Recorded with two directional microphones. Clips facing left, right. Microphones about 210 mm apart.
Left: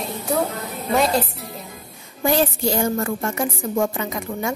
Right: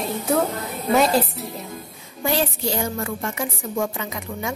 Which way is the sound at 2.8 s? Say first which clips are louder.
Left 4 dB; 45° left (ahead or behind).